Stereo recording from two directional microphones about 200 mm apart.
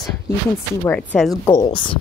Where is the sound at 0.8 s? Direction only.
5° left (ahead or behind).